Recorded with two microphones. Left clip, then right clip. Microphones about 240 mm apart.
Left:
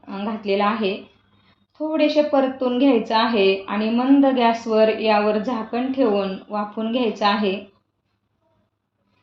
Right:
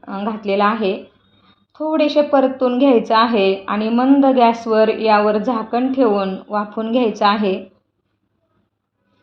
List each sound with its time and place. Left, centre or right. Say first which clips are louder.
0.0 s a woman's voice: right 4 dB; right